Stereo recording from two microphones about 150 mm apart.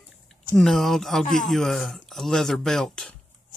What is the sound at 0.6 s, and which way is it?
Speech, centre (ahead or behind).